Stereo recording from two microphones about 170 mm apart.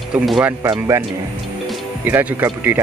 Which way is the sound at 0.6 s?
25° right (ahead or behind).